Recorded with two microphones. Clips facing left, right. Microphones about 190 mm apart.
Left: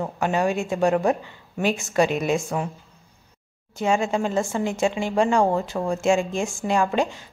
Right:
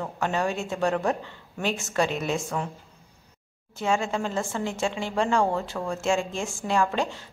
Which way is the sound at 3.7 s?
15° left (ahead or behind).